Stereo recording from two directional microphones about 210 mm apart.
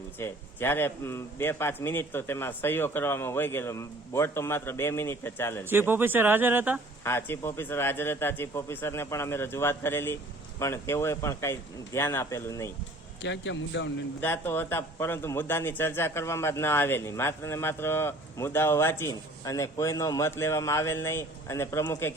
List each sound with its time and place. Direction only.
0.2 s a man's voice: 10° left (ahead or behind)
5.6 s speech: 10° right (ahead or behind)
7.0 s a man's voice: 10° left (ahead or behind)
13.2 s a man's voice: 60° left (ahead or behind)
14.2 s a man's voice: 10° left (ahead or behind)